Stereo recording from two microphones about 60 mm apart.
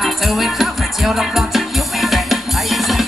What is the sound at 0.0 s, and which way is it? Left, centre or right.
Music, centre.